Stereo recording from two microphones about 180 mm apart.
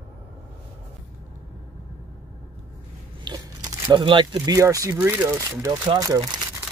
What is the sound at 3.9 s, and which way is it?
Speech, 25° right (ahead or behind).